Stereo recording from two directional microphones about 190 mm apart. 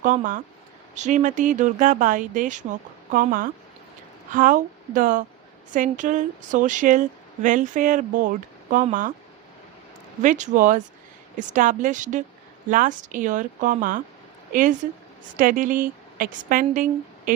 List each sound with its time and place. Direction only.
0.0 s speech: 45° right (ahead or behind)
10.2 s a woman's voice: 40° right (ahead or behind)
17.3 s a sound: 45° right (ahead or behind)